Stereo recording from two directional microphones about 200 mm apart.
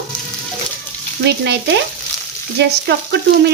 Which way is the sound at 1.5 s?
55° right (ahead or behind).